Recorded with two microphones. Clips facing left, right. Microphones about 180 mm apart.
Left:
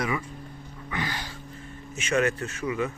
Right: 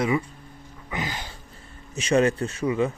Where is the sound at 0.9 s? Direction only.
20° right (ahead or behind).